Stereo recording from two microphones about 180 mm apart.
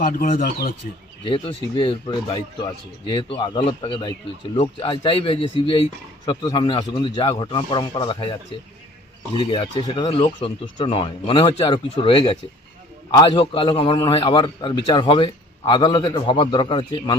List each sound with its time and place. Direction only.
0.0 s speech: 50° left (ahead or behind)
1.2 s a man's voice: 25° left (ahead or behind)
9.3 s a man's voice: 25° left (ahead or behind)